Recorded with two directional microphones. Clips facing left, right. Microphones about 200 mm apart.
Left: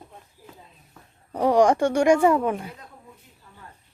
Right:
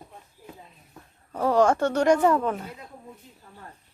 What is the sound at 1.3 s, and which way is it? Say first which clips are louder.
Speech: left 2 dB; 15° left (ahead or behind).